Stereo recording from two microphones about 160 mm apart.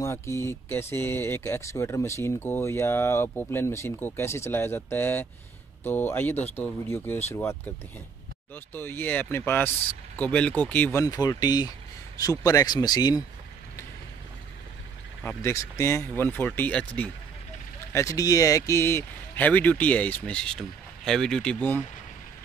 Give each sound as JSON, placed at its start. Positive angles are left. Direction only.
{"t": 0.0, "sound": "speech", "side_deg": 15}
{"t": 15.2, "sound": "speech", "side_deg": 20}
{"t": 17.9, "sound": "speech", "side_deg": 20}